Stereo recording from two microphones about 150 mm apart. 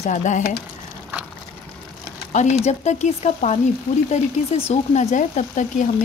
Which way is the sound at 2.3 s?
50° left (ahead or behind).